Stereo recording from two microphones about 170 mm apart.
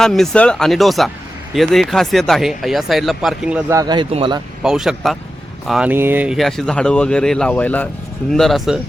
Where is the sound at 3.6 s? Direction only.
20° right (ahead or behind).